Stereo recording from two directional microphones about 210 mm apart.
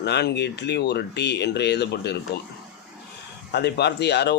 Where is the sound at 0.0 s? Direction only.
50° left (ahead or behind).